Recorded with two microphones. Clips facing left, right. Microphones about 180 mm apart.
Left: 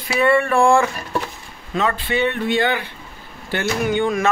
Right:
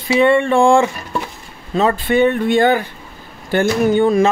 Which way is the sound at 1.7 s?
40° right (ahead or behind).